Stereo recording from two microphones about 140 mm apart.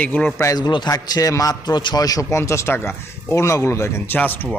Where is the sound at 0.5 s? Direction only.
30° left (ahead or behind); by 4.5 s 15° left (ahead or behind).